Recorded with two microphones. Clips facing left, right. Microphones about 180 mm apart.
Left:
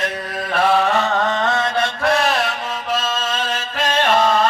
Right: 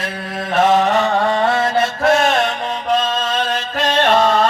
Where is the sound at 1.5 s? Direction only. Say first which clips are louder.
Right 3 dB; 25° right (ahead or behind).